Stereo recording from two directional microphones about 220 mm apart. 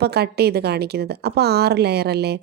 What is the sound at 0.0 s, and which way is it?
A woman's voice, 45° right (ahead or behind).